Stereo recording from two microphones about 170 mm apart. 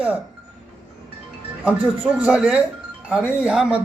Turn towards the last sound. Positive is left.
turn(degrees=-5)  # may be behind; listen again after turning